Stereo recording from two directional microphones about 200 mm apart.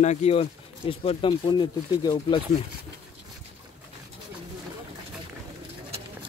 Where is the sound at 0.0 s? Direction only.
35° left (ahead or behind).